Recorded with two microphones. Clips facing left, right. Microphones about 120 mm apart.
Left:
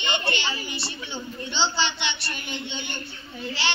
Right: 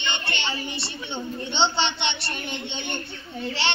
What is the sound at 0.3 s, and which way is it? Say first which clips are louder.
A child's voice: left 1 dB; 25° right (ahead or behind).